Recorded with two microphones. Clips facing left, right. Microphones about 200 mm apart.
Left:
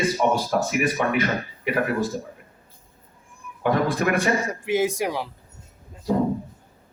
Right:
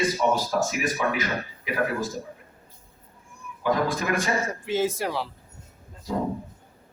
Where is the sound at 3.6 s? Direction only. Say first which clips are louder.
Left 3 dB; 60° left (ahead or behind).